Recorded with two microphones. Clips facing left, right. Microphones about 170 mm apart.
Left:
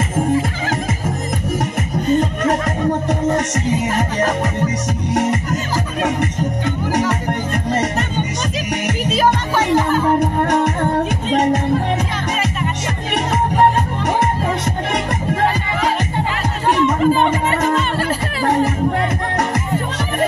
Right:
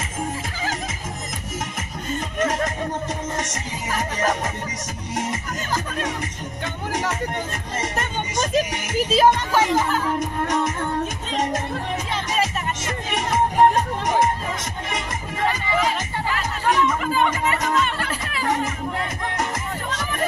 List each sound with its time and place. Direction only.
2.4 s music: 65° left (ahead or behind)
10.1 s music: 65° left (ahead or behind)
17.0 s music: 30° left (ahead or behind)